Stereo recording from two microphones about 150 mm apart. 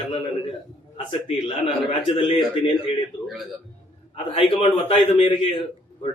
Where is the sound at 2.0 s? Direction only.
35° left (ahead or behind).